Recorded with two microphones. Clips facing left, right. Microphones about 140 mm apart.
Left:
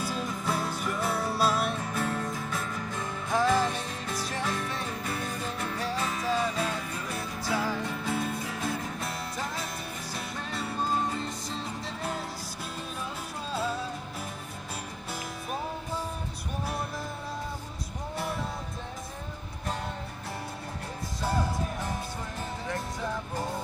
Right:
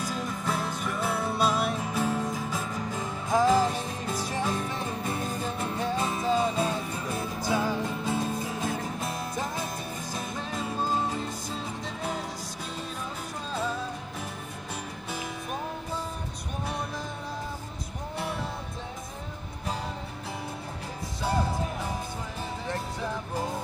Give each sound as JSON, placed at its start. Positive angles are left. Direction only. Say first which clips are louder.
{"t": 0.0, "sound": "music", "louder": "even", "side_deg": 5}
{"t": 13.5, "sound": "music", "louder": "even", "side_deg": 5}
{"t": 18.1, "sound": "music", "louder": "even", "side_deg": 0}